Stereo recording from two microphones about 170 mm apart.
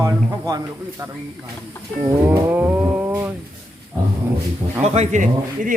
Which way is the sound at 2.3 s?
10° right (ahead or behind).